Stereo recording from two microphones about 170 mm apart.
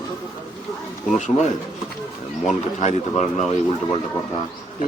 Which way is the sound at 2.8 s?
40° left (ahead or behind).